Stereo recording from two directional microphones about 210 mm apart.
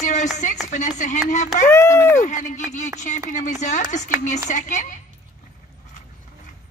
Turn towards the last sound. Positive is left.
turn(degrees=35)  # may be behind; listen again after turning